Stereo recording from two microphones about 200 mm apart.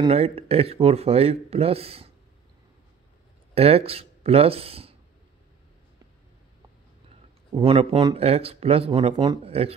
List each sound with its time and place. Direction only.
0.0 s speech: 30° right (ahead or behind)
3.5 s speech: 30° right (ahead or behind)
7.5 s speech: 30° right (ahead or behind)